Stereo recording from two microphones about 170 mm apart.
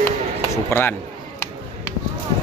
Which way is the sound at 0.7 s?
10° left (ahead or behind).